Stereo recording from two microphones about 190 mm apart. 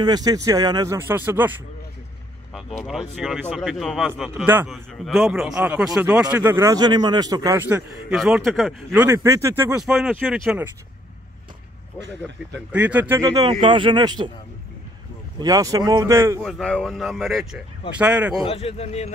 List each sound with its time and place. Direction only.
0.0 s speech: 20° right (ahead or behind)
2.9 s speech: centre (ahead or behind)
4.5 s a man's voice: 10° right (ahead or behind)
8.1 s speech: centre (ahead or behind)
9.0 s speech: 15° right (ahead or behind)
9.8 s speech: centre (ahead or behind)
12.7 s a man's voice: 10° right (ahead or behind); by 14.3 s 25° right (ahead or behind)
15.3 s a man's voice: 20° right (ahead or behind)
16.3 s speech: 5° left (ahead or behind)
18.4 s a man's voice: 30° left (ahead or behind)